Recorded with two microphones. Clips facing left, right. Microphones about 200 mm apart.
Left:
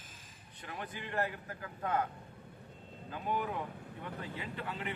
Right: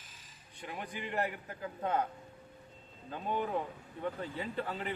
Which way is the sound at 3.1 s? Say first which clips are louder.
Right 2 dB; 30° right (ahead or behind).